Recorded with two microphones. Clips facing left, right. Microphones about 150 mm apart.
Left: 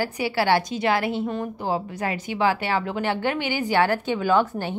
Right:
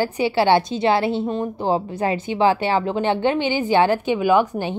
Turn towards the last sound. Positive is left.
turn(degrees=-15)  # may be behind; listen again after turning